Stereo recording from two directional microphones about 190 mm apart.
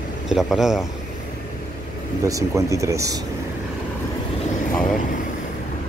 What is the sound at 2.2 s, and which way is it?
Speech, 15° right (ahead or behind).